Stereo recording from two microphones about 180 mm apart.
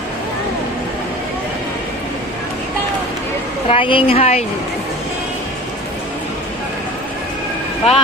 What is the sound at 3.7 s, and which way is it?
Speech, 30° left (ahead or behind).